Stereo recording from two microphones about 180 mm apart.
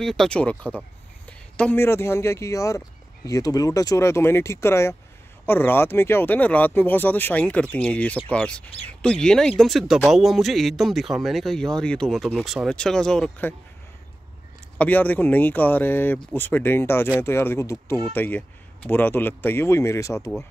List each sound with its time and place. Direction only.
0.0 s speech: centre (ahead or behind)
14.8 s speech: 10° left (ahead or behind)